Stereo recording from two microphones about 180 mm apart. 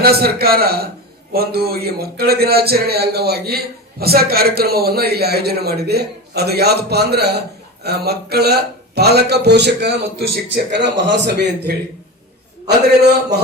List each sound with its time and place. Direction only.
0.0 s speech: 60° right (ahead or behind)